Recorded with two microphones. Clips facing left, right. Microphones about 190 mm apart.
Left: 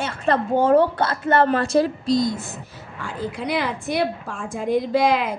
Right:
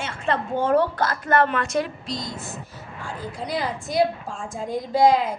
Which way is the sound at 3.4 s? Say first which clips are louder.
Left 2 dB; 70° left (ahead or behind).